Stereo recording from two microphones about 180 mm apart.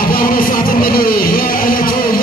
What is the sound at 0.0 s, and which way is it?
Music, 55° left (ahead or behind).